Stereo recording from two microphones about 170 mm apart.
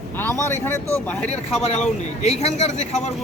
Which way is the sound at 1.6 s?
40° left (ahead or behind).